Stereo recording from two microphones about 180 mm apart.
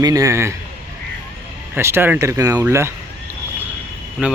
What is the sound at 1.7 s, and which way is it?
Speech, 15° right (ahead or behind).